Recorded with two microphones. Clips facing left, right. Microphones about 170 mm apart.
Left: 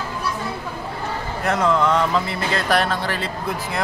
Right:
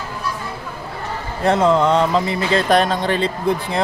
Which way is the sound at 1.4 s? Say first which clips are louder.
Right 4 dB; 25° right (ahead or behind).